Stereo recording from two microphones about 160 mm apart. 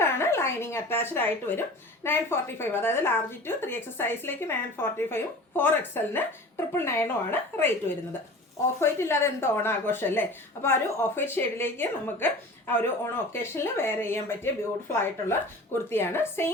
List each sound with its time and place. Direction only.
0.0 s speech: 15° left (ahead or behind)
8.8 s speech: 15° left (ahead or behind)